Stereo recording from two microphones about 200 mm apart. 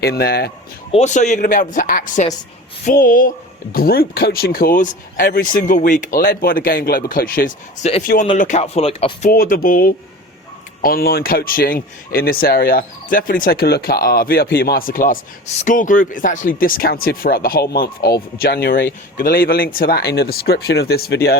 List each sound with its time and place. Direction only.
0.0 s speech: 50° left (ahead or behind)
0.9 s speech: 35° left (ahead or behind)
8.0 s speech: 45° left (ahead or behind)
8.4 s speech: 35° left (ahead or behind)
9.3 s speech: 45° left (ahead or behind)